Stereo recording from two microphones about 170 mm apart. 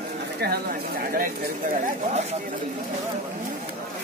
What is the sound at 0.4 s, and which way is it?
Speech, 65° right (ahead or behind).